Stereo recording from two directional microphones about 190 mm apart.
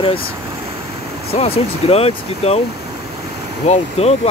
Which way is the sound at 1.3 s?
30° left (ahead or behind).